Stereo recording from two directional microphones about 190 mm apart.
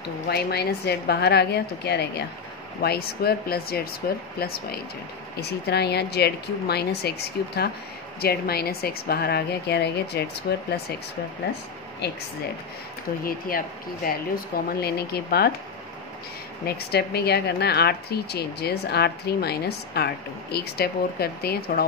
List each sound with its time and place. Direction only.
0.3 s speech: 55° left (ahead or behind)
13.2 s speech: 50° left (ahead or behind)
16.6 s speech: 55° left (ahead or behind)